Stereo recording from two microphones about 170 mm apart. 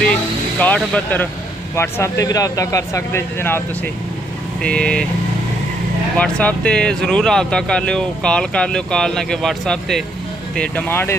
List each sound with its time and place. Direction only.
0.0 s vehicle: 5° left (ahead or behind)
1.8 s speech: 15° left (ahead or behind)
6.1 s speech: 5° left (ahead or behind)